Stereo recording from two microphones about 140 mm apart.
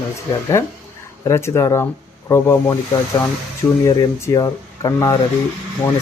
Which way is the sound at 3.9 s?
25° left (ahead or behind).